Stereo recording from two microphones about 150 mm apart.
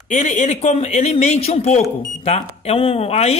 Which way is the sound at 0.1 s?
55° left (ahead or behind).